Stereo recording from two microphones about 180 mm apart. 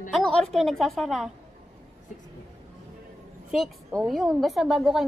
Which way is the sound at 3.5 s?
Centre (ahead or behind).